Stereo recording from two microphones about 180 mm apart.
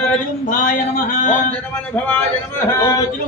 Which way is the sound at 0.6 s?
50° left (ahead or behind).